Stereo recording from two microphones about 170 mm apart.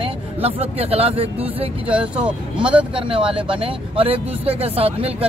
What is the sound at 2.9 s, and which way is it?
Speech, 30° right (ahead or behind).